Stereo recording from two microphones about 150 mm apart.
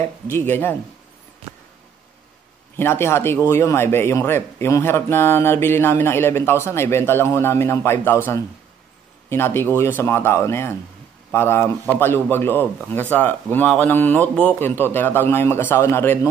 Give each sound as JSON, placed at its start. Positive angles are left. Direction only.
{"t": 0.0, "sound": "speech", "side_deg": 15}
{"t": 2.8, "sound": "speech", "side_deg": 15}